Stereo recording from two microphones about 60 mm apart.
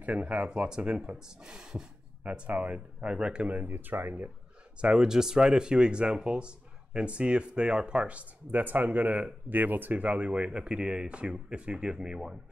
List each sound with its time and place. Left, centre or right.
0.0 s speech: right
2.2 s speech: right
4.8 s speech: centre